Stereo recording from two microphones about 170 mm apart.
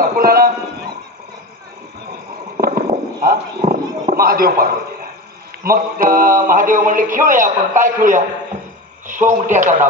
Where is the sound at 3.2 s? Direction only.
55° right (ahead or behind).